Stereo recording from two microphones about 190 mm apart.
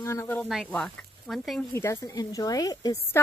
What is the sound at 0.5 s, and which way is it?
Speech, centre (ahead or behind).